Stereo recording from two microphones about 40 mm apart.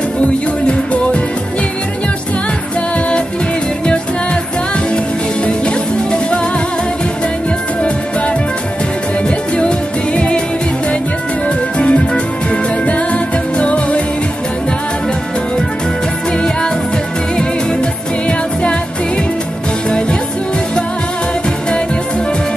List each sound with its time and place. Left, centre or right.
9.6 s music: left
11.4 s music: left